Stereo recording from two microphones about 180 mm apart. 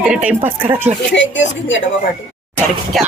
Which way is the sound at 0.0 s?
5° right (ahead or behind).